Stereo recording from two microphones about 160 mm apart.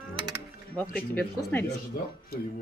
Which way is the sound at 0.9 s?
10° left (ahead or behind).